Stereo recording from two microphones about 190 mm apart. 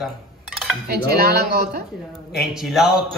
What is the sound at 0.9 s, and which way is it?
Speech, 55° right (ahead or behind).